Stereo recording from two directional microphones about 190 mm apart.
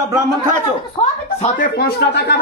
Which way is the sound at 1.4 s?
50° left (ahead or behind).